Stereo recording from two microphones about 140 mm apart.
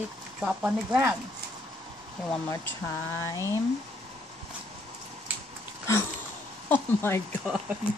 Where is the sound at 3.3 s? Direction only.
25° left (ahead or behind).